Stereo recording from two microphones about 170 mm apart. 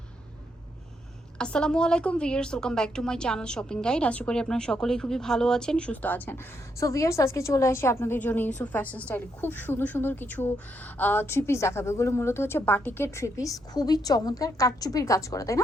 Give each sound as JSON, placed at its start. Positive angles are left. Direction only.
{"t": 1.4, "sound": "a woman's voice", "side_deg": 5}